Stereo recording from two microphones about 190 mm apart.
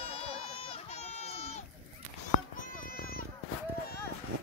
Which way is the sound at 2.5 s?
50° left (ahead or behind).